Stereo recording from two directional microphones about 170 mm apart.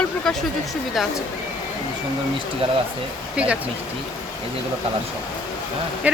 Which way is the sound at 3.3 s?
5° right (ahead or behind).